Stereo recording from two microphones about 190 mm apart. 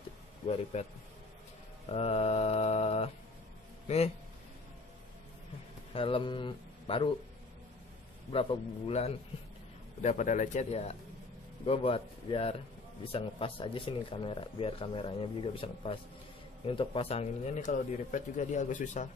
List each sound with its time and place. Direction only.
0.7 s a man's voice: 35° left (ahead or behind)
5.9 s speech: 30° left (ahead or behind)
8.3 s a man's voice: 30° left (ahead or behind)